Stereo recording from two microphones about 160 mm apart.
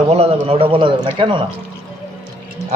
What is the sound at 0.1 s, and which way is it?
A man's voice, 40° right (ahead or behind).